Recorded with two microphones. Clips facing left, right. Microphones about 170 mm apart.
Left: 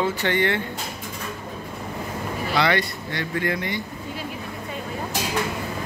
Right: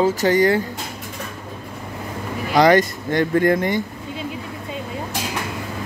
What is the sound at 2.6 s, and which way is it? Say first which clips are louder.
Speech: right 9 dB; 45° right (ahead or behind).